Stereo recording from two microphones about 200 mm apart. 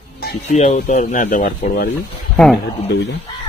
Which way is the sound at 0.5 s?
35° left (ahead or behind).